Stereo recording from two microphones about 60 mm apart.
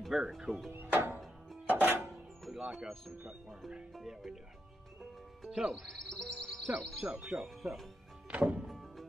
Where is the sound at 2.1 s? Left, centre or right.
Centre.